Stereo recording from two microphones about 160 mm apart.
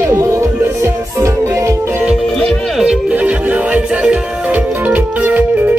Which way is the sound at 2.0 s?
5° right (ahead or behind).